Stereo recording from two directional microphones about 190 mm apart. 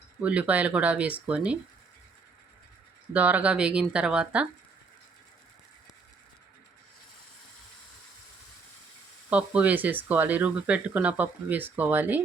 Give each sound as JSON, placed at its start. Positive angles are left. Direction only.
{"t": 0.2, "sound": "speech", "side_deg": -5}
{"t": 3.1, "sound": "speech", "side_deg": -10}
{"t": 9.3, "sound": "speech", "side_deg": -5}